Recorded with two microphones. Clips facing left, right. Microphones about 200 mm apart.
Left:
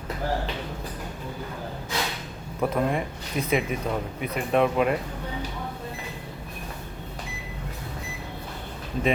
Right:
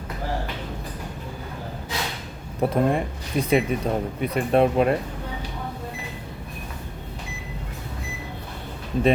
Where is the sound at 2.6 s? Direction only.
35° right (ahead or behind).